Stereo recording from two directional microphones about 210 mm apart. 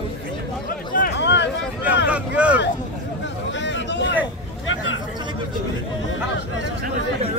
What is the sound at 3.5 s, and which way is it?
Vehicle, 60° left (ahead or behind).